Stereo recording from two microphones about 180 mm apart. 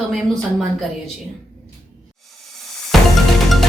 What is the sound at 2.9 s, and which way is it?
Music, centre (ahead or behind).